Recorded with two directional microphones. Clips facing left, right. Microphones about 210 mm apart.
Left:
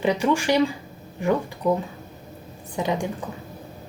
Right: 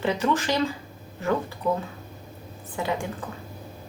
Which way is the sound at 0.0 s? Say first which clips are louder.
Left 3 dB; 15° left (ahead or behind).